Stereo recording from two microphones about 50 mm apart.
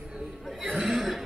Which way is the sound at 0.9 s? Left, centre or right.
Centre.